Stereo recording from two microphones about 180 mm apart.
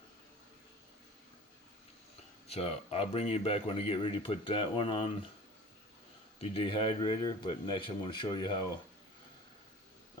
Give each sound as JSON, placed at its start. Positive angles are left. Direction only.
{"t": 2.5, "sound": "speech", "side_deg": 35}
{"t": 6.4, "sound": "speech", "side_deg": 30}